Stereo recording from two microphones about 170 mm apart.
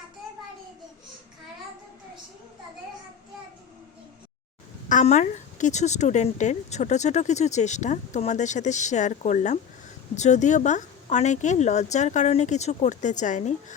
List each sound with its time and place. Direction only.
4.9 s a woman's voice: 45° left (ahead or behind)